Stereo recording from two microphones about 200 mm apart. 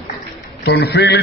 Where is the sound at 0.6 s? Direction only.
55° left (ahead or behind).